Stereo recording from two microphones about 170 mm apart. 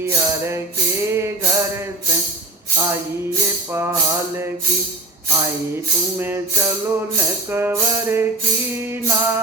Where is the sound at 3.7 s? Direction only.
15° right (ahead or behind).